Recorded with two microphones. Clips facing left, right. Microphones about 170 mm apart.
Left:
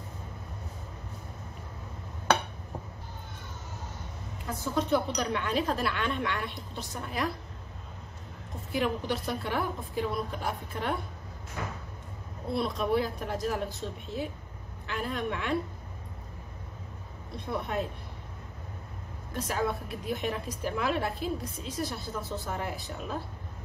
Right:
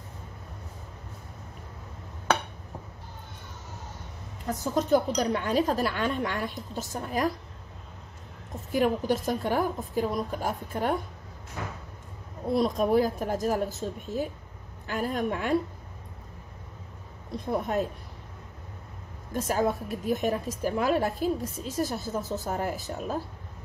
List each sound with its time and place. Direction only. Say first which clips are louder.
4.5 s a woman's voice: right 4 dB; 40° right (ahead or behind)
8.7 s a woman's voice: right 5 dB; 45° right (ahead or behind)
12.5 s a woman's voice: right 5 dB; 40° right (ahead or behind)
17.5 s a woman's voice: right 4 dB; 45° right (ahead or behind)
19.3 s a woman's voice: right 5 dB; 45° right (ahead or behind)